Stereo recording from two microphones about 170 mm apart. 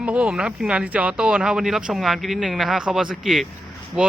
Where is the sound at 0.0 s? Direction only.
5° right (ahead or behind).